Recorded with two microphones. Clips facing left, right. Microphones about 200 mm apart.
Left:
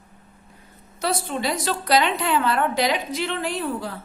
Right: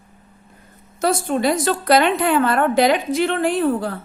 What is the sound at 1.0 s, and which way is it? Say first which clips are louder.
A woman's voice: right 6 dB; 50° right (ahead or behind).